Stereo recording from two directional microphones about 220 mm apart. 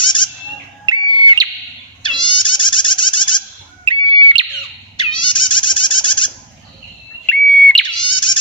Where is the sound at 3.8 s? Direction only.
25° right (ahead or behind).